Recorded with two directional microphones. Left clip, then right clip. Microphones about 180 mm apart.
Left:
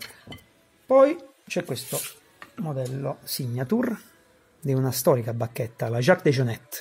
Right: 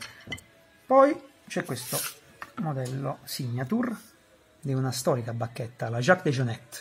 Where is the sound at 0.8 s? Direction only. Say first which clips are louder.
Left 2 dB; 40° left (ahead or behind).